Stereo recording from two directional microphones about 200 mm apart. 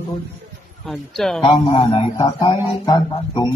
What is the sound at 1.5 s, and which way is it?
A man's voice, 25° left (ahead or behind).